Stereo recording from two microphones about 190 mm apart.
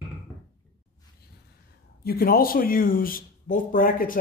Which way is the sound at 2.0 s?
50° left (ahead or behind).